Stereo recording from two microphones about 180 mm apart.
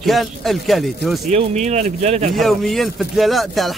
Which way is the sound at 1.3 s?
40° right (ahead or behind).